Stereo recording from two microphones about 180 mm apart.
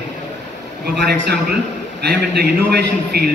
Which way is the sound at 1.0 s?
60° right (ahead or behind).